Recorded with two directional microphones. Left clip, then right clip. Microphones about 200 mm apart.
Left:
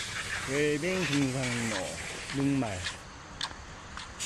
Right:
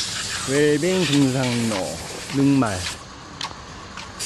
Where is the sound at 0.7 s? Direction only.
35° right (ahead or behind).